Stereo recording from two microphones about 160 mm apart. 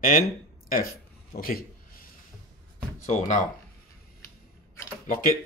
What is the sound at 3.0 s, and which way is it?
Speech, 50° left (ahead or behind).